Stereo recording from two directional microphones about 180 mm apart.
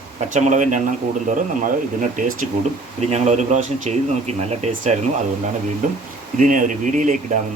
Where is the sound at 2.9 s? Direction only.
40° right (ahead or behind).